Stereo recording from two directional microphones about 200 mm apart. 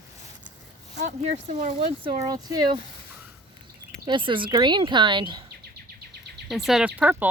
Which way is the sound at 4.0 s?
25° right (ahead or behind).